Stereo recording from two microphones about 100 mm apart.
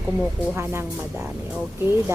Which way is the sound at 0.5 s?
25° right (ahead or behind).